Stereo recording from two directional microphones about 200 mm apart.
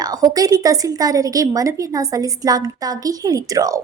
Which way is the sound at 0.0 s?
20° right (ahead or behind).